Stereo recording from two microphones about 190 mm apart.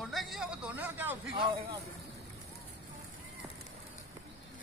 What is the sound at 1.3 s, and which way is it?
Speech, 25° right (ahead or behind).